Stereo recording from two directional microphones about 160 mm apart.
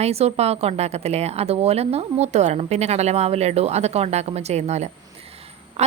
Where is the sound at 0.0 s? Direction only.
40° right (ahead or behind).